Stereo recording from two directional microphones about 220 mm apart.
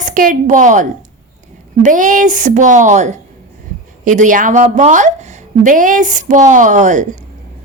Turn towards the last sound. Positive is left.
turn(degrees=-35)  # may be behind; listen again after turning